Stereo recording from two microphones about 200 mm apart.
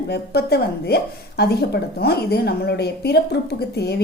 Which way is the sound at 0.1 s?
55° left (ahead or behind).